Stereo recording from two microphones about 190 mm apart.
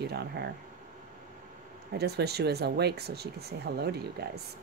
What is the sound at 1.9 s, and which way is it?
Speech, 60° right (ahead or behind).